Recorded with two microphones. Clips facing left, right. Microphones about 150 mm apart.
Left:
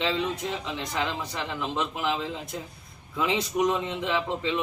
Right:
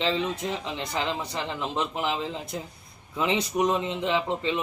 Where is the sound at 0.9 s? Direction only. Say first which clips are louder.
Right 1 dB; 30° right (ahead or behind).